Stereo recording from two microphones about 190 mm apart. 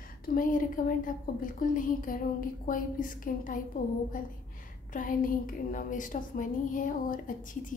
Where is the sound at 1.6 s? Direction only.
45° left (ahead or behind).